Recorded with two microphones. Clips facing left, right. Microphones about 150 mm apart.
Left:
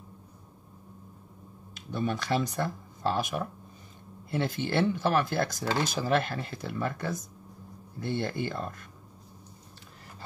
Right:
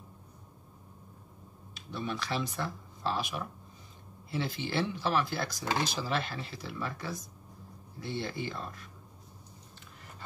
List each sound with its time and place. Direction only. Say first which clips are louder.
1.7 s speech: left 6 dB; 45° left (ahead or behind)